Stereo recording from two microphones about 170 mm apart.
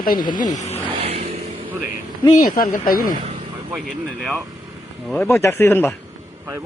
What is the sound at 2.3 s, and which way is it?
Speech, 55° left (ahead or behind).